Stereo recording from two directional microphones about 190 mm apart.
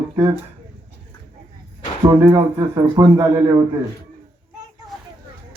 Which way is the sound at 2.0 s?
15° right (ahead or behind).